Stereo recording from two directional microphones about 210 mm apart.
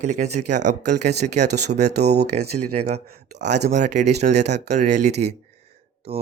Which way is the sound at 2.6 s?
90° right.